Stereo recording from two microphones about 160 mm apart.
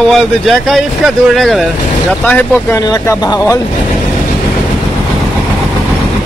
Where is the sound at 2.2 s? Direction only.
10° left (ahead or behind).